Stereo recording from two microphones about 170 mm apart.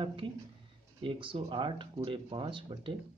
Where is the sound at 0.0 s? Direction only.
30° right (ahead or behind).